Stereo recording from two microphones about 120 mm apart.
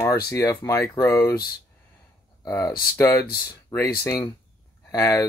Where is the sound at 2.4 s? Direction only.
25° left (ahead or behind).